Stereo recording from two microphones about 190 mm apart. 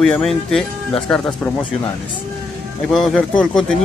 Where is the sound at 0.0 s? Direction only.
5° left (ahead or behind).